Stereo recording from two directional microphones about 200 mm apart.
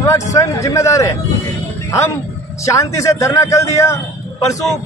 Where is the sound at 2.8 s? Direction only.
15° left (ahead or behind).